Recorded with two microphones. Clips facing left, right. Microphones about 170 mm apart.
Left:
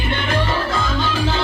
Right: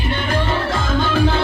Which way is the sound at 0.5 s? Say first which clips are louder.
Right 1 dB; 50° right (ahead or behind).